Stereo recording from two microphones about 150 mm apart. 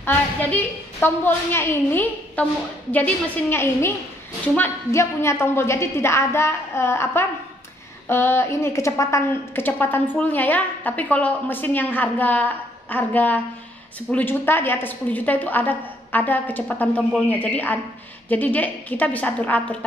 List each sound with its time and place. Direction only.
0.0 s a woman's voice: 10° left (ahead or behind)